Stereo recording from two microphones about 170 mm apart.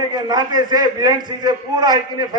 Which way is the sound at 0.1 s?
25° right (ahead or behind).